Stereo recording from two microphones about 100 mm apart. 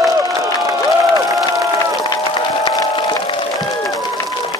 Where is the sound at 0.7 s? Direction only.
35° right (ahead or behind).